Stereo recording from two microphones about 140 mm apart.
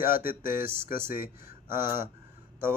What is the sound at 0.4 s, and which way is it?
Speech, 15° right (ahead or behind).